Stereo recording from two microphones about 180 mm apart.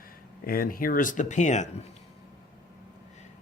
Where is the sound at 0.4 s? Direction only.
55° left (ahead or behind).